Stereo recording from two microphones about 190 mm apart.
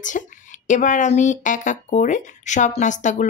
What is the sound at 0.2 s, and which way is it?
A woman's voice, 45° left (ahead or behind).